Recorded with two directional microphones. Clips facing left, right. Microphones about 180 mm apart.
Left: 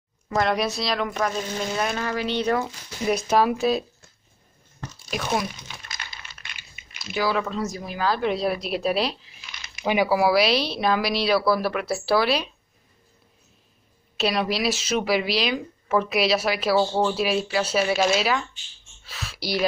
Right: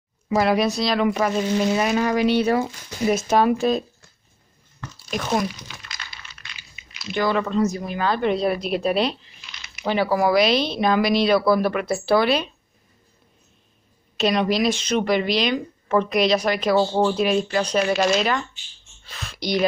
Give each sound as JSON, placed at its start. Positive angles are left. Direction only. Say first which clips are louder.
{"t": 0.3, "sound": "a woman's voice", "louder": "right 4 dB", "side_deg": -5}
{"t": 5.1, "sound": "a woman's voice", "louder": "right 3 dB", "side_deg": 0}
{"t": 6.4, "sound": "coin", "louder": "even", "side_deg": 55}
{"t": 7.1, "sound": "a woman's voice", "louder": "right 3 dB", "side_deg": 5}
{"t": 14.1, "sound": "a woman's voice", "louder": "right 4 dB", "side_deg": 5}